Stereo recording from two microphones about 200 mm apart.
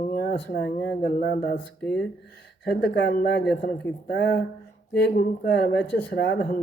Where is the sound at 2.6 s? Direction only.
55° left (ahead or behind).